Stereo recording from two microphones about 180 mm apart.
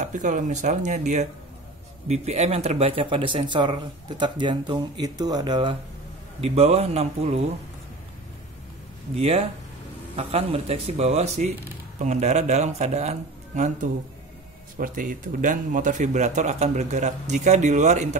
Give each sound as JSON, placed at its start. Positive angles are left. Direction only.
{"t": 0.0, "sound": "speech", "side_deg": -45}
{"t": 9.2, "sound": "speech", "side_deg": -35}